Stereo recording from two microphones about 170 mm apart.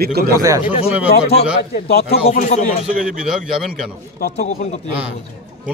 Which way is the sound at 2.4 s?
40° left (ahead or behind).